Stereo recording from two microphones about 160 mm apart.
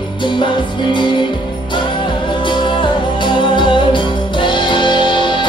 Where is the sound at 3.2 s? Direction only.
30° left (ahead or behind).